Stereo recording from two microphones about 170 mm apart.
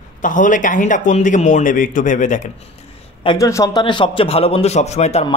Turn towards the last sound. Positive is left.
turn(degrees=40)  # may be behind; listen again after turning